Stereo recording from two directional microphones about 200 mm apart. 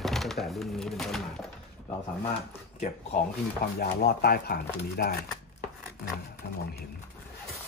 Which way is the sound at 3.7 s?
50° left (ahead or behind).